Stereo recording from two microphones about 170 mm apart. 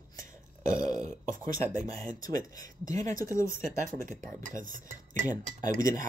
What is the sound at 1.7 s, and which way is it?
Speech, 20° left (ahead or behind).